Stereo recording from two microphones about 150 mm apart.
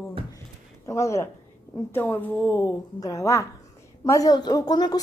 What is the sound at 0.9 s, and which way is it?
A woman's voice, 20° left (ahead or behind).